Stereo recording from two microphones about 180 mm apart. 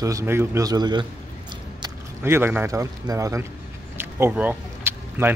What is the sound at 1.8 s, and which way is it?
A man's voice, 15° right (ahead or behind).